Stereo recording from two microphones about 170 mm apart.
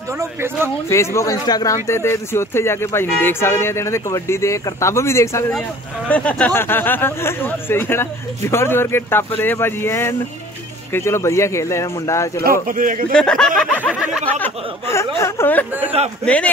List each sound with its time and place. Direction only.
0.2 s speech: 15° right (ahead or behind)
0.8 s speech: 15° left (ahead or behind)
12.6 s a man's voice: 50° right (ahead or behind)
13.1 s speech: 5° left (ahead or behind)
14.4 s speech: 15° left (ahead or behind)